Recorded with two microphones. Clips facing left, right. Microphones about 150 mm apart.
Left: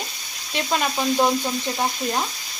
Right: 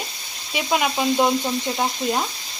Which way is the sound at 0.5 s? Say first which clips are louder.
Right 2 dB; 10° right (ahead or behind).